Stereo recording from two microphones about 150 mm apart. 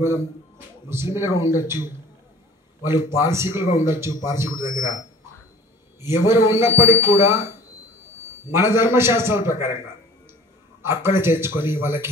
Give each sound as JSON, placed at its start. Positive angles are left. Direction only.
{"t": 0.8, "sound": "speech", "side_deg": -15}
{"t": 3.1, "sound": "speech", "side_deg": -15}
{"t": 5.9, "sound": "speech", "side_deg": -15}